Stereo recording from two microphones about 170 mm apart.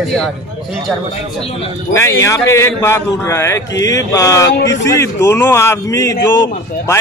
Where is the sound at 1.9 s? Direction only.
15° left (ahead or behind).